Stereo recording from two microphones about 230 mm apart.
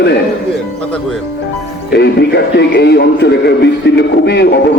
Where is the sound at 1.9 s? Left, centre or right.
Left.